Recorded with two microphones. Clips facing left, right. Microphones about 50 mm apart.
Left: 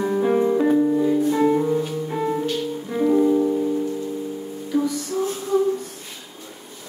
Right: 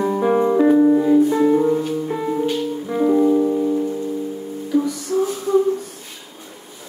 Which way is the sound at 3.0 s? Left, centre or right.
Centre.